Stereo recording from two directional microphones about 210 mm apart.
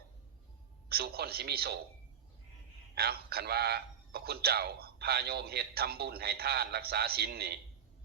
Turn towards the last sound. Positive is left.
turn(degrees=-50)  # may be behind; listen again after turning